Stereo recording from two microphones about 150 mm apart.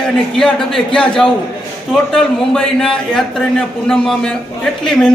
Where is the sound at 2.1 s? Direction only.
5° left (ahead or behind).